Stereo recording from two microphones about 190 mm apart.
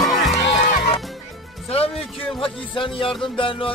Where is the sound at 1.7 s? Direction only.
30° left (ahead or behind).